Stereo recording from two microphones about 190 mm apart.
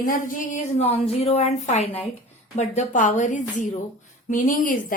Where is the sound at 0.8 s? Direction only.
30° left (ahead or behind).